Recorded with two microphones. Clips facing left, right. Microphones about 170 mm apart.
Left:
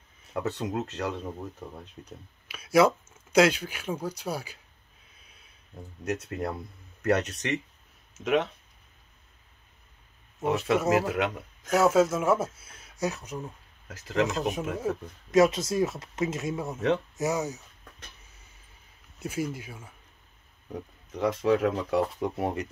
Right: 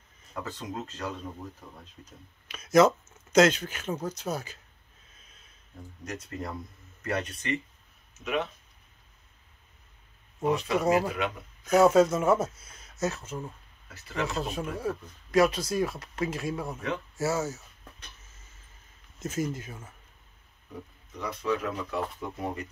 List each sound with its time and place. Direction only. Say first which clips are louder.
0.3 s speech: left 6 dB; 70° left (ahead or behind)
2.4 s speech: right 1 dB; 5° left (ahead or behind)
6.0 s speech: left 6 dB; 65° left (ahead or behind); by 8.5 s 90° left
10.4 s speech: left 1 dB; 5° left (ahead or behind)
11.1 s speech: left 3 dB; 75° left (ahead or behind)
11.7 s speech: right 2 dB; 5° left (ahead or behind)
13.8 s speech: left 7 dB; 90° left
14.4 s speech: left 3 dB; 20° left (ahead or behind)
19.1 s speech: even; 10° left (ahead or behind)
21.1 s speech: left 6 dB; 90° left